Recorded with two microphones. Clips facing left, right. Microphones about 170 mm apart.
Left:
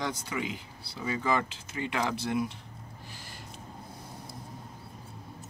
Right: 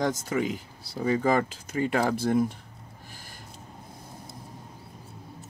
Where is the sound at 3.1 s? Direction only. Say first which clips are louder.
Even; 45° right (ahead or behind).